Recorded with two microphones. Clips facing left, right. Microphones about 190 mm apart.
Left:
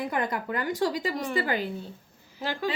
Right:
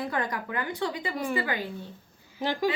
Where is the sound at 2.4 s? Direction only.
15° right (ahead or behind).